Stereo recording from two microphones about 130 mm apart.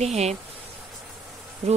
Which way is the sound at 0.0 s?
60° right (ahead or behind).